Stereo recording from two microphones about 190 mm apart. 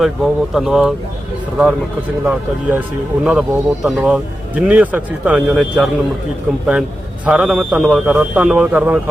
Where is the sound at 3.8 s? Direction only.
5° right (ahead or behind).